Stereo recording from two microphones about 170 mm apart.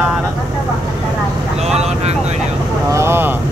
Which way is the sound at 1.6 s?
40° right (ahead or behind).